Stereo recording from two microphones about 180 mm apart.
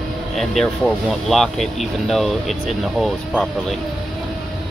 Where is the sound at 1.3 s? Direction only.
Centre (ahead or behind).